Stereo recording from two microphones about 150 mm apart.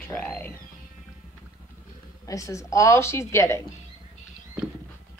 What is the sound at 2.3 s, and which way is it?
A woman's voice, 20° left (ahead or behind).